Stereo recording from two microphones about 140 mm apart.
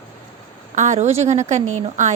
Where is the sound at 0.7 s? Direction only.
60° right (ahead or behind).